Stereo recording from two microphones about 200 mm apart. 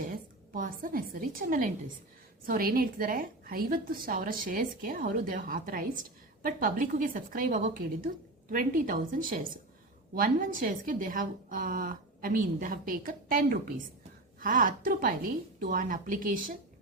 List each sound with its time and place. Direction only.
0.0 s a woman's voice: 45° right (ahead or behind)